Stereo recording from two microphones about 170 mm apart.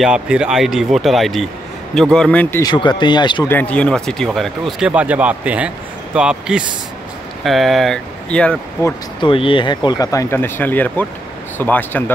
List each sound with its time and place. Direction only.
0.0 s speech: 5° right (ahead or behind)
2.6 s speech: 25° left (ahead or behind)
3.4 s speech: 10° left (ahead or behind)
9.2 s speech: 30° left (ahead or behind); by 12.0 s 10° left (ahead or behind)